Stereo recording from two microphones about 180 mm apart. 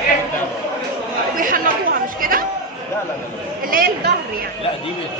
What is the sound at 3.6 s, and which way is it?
Speech, 55° right (ahead or behind).